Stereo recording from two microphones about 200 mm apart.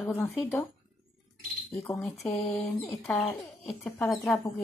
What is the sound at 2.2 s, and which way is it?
Speech, centre (ahead or behind).